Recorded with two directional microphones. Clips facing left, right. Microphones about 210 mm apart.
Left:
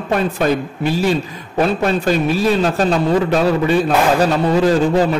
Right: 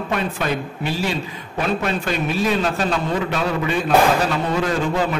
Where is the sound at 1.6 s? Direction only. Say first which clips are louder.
Left 6 dB; 40° left (ahead or behind).